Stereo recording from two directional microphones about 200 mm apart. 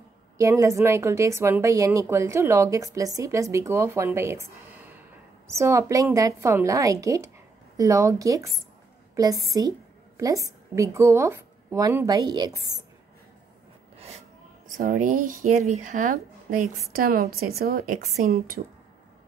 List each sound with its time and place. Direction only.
0.4 s a woman's voice: 15° right (ahead or behind)
13.9 s a sound: 30° right (ahead or behind)
14.8 s a woman's voice: 40° right (ahead or behind)